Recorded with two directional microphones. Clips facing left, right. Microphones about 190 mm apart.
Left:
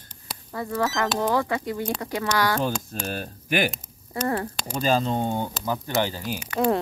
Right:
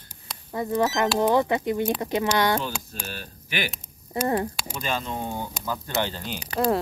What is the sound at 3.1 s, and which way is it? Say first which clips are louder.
Speech: left 7 dB; 45° left (ahead or behind).